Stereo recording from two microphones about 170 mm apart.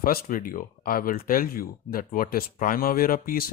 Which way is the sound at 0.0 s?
55° left (ahead or behind).